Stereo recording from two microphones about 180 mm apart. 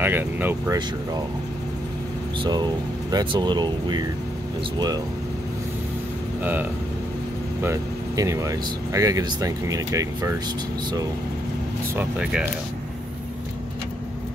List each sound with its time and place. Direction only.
0.0 s speech: 10° right (ahead or behind)
3.1 s speech: 25° right (ahead or behind)
7.6 s speech: 15° right (ahead or behind)
11.9 s speech: 10° right (ahead or behind)